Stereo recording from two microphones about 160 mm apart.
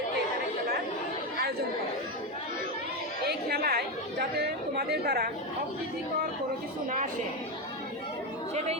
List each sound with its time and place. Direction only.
3.2 s a woman's voice: 85° right